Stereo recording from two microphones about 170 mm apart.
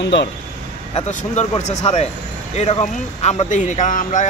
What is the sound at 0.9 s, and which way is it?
A man's voice, 45° left (ahead or behind).